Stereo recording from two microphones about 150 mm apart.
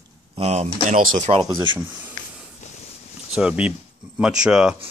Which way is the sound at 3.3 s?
5° right (ahead or behind).